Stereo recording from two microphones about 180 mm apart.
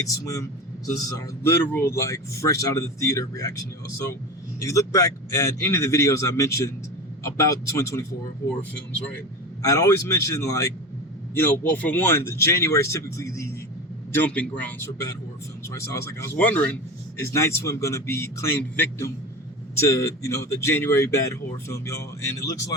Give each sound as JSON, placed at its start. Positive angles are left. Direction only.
{"t": 0.0, "sound": "a man's voice", "side_deg": 20}
{"t": 9.6, "sound": "speech", "side_deg": 15}